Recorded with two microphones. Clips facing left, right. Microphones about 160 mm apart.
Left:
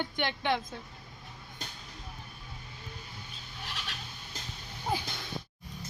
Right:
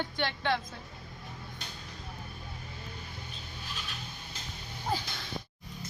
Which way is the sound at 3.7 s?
75° left (ahead or behind).